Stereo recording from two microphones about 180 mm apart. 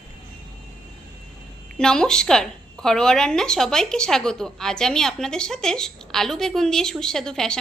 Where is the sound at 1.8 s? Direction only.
5° left (ahead or behind).